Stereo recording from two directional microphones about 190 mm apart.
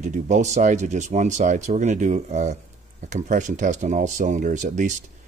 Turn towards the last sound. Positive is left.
turn(degrees=-40)  # may be behind; listen again after turning